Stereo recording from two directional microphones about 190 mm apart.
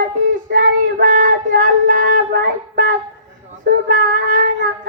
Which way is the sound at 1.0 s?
45° right (ahead or behind).